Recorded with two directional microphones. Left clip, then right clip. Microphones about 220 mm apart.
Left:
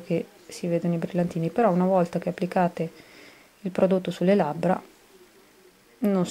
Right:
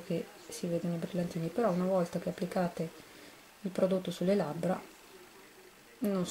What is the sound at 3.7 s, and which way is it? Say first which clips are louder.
Speech: left 8 dB; centre (ahead or behind).